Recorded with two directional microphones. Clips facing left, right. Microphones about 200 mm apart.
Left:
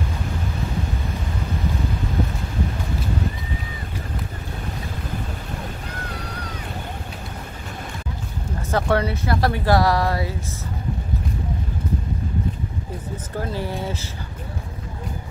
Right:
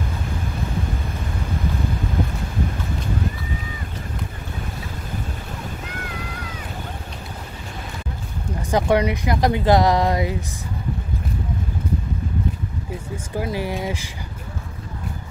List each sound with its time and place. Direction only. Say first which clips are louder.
8.6 s speech: right 3 dB; 15° right (ahead or behind)
13.1 s speech: right 2 dB; 10° right (ahead or behind)